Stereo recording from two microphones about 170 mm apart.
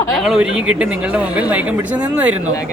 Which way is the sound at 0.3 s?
5° right (ahead or behind).